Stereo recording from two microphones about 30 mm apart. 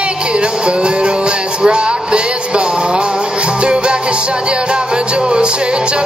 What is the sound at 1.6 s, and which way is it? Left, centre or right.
Music, right.